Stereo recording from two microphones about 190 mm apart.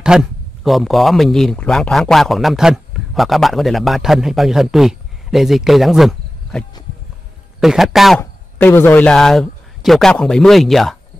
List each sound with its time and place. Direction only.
0.0 s speech: 5° right (ahead or behind)
7.6 s speech: centre (ahead or behind)
8.2 s speech: 10° left (ahead or behind)